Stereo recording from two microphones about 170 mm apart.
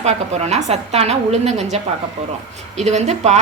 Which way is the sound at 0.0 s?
40° right (ahead or behind).